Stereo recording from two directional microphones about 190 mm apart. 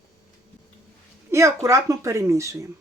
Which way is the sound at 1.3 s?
15° right (ahead or behind).